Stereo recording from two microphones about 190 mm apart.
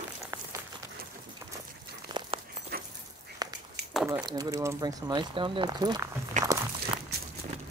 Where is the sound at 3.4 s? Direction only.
20° right (ahead or behind).